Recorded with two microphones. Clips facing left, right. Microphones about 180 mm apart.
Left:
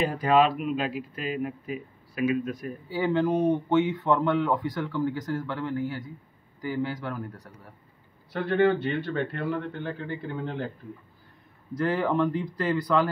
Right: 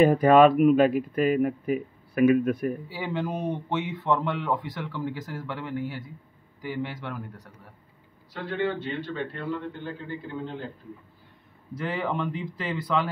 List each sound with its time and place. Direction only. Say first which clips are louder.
0.0 s speech: right 6 dB; 55° right (ahead or behind)
2.9 s speech: left 6 dB; 5° right (ahead or behind)
8.3 s a man's voice: left 6 dB; 55° left (ahead or behind)
11.7 s speech: left 4 dB; centre (ahead or behind)